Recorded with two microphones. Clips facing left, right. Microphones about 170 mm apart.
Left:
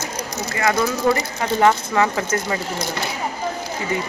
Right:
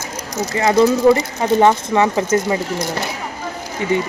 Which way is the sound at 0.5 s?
30° right (ahead or behind).